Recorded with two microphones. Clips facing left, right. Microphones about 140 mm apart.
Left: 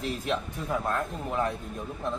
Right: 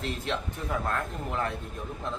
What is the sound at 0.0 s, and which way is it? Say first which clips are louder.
A man's voice: left 2 dB; 5° left (ahead or behind).